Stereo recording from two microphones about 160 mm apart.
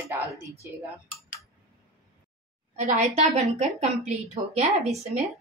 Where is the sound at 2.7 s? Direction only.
45° right (ahead or behind).